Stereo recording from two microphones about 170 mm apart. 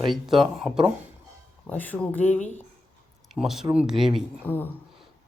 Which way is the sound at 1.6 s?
10° left (ahead or behind).